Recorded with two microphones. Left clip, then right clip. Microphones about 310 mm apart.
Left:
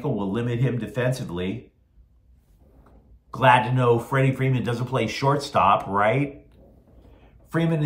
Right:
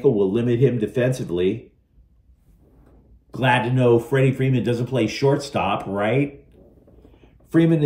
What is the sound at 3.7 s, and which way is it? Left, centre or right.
Speech, left.